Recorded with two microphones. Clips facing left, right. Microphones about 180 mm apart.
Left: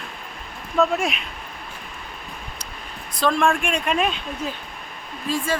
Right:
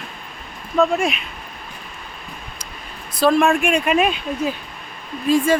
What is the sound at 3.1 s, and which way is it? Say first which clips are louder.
A woman's voice: right 5 dB; 5° right (ahead or behind).